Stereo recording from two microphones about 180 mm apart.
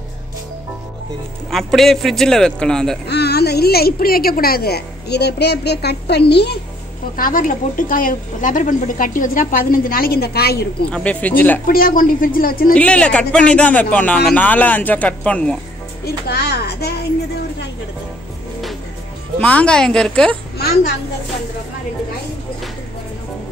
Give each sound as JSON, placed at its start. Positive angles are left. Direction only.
{"t": 1.5, "sound": "a man's voice", "side_deg": 0}
{"t": 3.1, "sound": "a woman's voice", "side_deg": 65}
{"t": 7.2, "sound": "speech", "side_deg": 50}
{"t": 10.9, "sound": "speech", "side_deg": 5}
{"t": 11.6, "sound": "speech", "side_deg": 50}
{"t": 12.7, "sound": "speech", "side_deg": 5}
{"t": 16.3, "sound": "a woman's voice", "side_deg": 60}
{"t": 19.4, "sound": "a man's voice", "side_deg": 5}